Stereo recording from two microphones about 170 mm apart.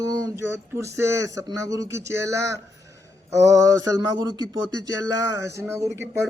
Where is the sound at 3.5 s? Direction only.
20° right (ahead or behind).